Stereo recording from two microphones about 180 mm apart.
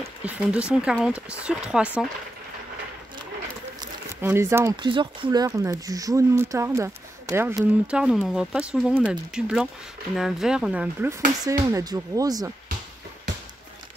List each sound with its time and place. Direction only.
0.2 s speech: 5° right (ahead or behind)
3.8 s a sound: 15° right (ahead or behind)
4.8 s speech: 25° right (ahead or behind)